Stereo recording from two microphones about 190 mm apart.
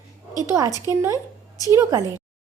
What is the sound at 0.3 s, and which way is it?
A woman's voice, 15° right (ahead or behind).